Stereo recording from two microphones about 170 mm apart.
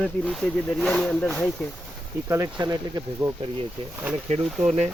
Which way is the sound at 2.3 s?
20° right (ahead or behind).